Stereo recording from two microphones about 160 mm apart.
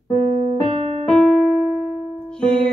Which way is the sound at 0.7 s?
40° right (ahead or behind).